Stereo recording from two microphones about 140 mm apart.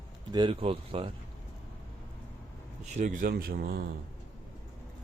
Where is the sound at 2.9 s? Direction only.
65° right (ahead or behind); by 3.8 s 90° right.